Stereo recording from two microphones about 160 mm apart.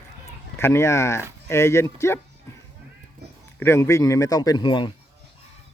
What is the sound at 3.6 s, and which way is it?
A man's voice, 15° left (ahead or behind).